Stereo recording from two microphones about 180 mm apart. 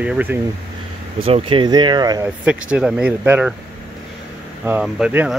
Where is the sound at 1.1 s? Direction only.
30° right (ahead or behind).